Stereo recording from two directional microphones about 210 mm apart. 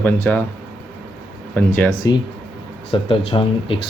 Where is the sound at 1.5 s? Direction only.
10° left (ahead or behind).